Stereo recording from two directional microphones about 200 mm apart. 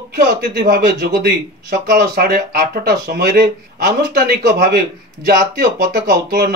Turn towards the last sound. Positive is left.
turn(degrees=-45)  # may be behind; listen again after turning